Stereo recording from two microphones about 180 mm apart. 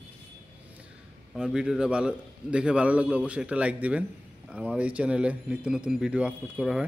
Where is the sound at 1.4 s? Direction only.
5° right (ahead or behind).